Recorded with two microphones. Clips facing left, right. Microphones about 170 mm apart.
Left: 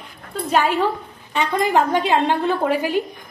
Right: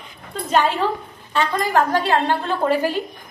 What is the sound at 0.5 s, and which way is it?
Speech, 10° left (ahead or behind).